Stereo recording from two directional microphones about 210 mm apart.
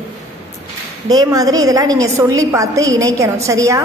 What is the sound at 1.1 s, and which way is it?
A woman's voice, 15° right (ahead or behind).